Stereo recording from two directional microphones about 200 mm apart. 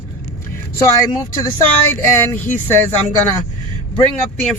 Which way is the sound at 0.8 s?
20° left (ahead or behind).